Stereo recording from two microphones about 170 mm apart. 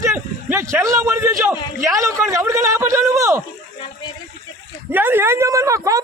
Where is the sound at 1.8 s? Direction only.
15° right (ahead or behind).